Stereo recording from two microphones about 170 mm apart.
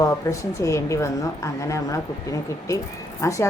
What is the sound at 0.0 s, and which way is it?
A woman's voice, 20° left (ahead or behind).